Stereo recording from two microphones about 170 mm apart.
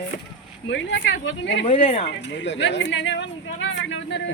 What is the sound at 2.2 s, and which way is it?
Speech, 90° left.